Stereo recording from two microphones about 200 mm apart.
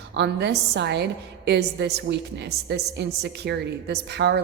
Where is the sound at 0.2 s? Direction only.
60° right (ahead or behind).